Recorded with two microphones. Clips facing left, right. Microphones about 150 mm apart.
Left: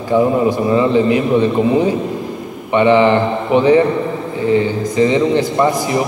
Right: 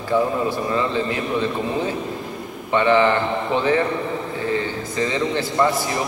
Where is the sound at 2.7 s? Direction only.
15° left (ahead or behind).